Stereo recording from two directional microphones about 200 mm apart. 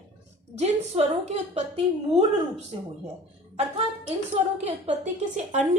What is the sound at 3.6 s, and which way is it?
Speech, 30° right (ahead or behind).